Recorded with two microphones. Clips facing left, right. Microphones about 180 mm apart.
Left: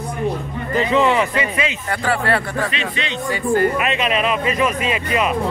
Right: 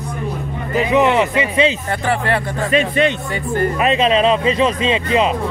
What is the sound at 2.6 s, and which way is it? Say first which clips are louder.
Speech: right 10 dB; 50° right (ahead or behind).